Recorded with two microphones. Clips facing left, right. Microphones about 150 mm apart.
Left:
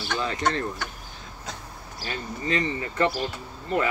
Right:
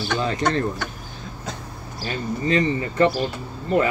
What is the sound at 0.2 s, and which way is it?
Speech, 35° right (ahead or behind).